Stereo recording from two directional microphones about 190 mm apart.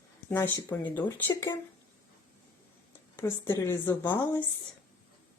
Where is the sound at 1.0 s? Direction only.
10° left (ahead or behind).